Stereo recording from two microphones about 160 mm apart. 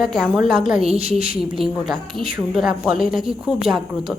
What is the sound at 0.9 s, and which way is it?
Speech, 35° right (ahead or behind).